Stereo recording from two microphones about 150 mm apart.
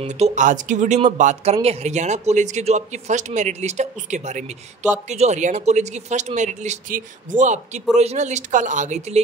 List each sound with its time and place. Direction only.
0.0 s speech: 50° right (ahead or behind)